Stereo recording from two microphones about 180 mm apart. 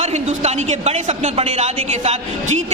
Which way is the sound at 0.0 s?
40° right (ahead or behind).